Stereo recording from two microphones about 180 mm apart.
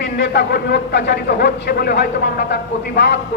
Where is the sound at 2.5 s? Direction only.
75° left (ahead or behind).